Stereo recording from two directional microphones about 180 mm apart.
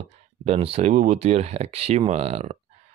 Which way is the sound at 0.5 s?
35° right (ahead or behind).